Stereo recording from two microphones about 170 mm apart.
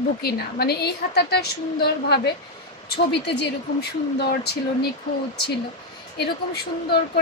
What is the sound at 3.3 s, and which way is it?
A woman's voice, 70° left (ahead or behind).